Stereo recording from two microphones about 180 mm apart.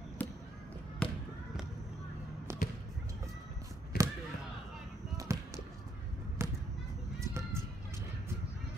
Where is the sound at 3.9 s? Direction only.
60° left (ahead or behind).